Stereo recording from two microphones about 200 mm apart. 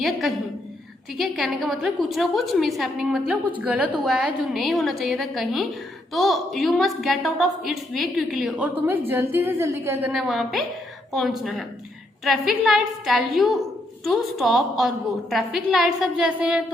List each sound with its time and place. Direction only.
0.0 s a woman's voice: centre (ahead or behind)
10.1 s a woman's voice: centre (ahead or behind)